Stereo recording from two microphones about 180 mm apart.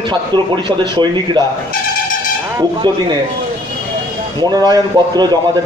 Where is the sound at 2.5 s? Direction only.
25° right (ahead or behind).